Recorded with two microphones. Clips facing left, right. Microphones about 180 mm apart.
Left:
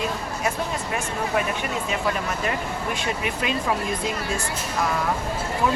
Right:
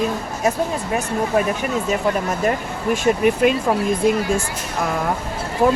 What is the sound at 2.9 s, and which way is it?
Speech, 50° right (ahead or behind).